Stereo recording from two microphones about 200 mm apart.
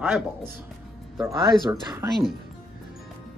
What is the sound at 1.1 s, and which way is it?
Speech, 20° right (ahead or behind).